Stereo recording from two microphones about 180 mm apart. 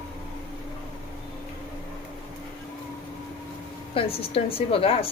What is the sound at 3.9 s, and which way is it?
A woman's voice, 30° left (ahead or behind).